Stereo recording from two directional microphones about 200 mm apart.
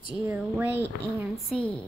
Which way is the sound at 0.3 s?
10° right (ahead or behind).